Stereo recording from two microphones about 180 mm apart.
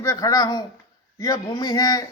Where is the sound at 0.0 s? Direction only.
15° left (ahead or behind).